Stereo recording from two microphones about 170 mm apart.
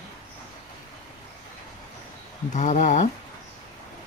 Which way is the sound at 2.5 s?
45° left (ahead or behind).